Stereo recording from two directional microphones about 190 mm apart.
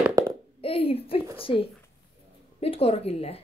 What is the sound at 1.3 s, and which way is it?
A child's voice, 30° left (ahead or behind).